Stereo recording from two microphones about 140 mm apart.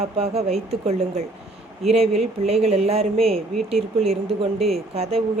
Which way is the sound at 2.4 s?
50° right (ahead or behind).